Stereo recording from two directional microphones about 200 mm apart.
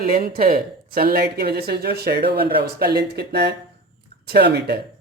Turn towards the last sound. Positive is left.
turn(degrees=-55)  # may be behind; listen again after turning